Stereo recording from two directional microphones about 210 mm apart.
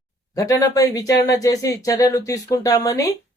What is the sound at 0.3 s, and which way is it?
Speech, 15° left (ahead or behind).